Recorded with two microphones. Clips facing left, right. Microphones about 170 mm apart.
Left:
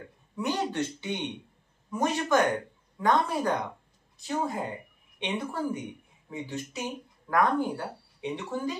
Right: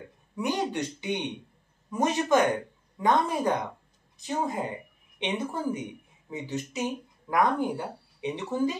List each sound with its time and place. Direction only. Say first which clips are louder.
0.4 s speech: right 1 dB; 15° right (ahead or behind)